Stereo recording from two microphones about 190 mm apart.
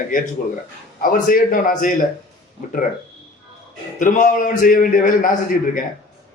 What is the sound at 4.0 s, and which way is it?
A man's voice, 45° left (ahead or behind).